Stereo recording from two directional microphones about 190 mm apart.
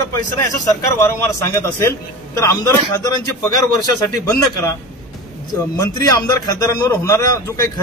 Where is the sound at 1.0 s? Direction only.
15° left (ahead or behind).